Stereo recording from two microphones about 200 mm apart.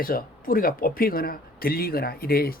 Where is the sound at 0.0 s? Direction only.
45° left (ahead or behind).